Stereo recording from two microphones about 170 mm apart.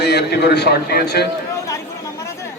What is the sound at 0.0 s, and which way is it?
A man's voice, 75° left (ahead or behind).